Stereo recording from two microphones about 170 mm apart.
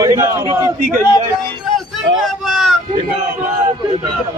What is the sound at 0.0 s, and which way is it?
Speech, 20° right (ahead or behind).